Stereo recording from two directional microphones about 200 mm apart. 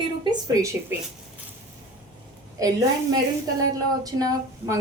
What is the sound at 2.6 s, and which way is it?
Speech, 15° right (ahead or behind).